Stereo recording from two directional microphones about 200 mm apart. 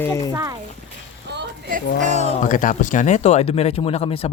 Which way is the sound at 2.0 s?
35° right (ahead or behind).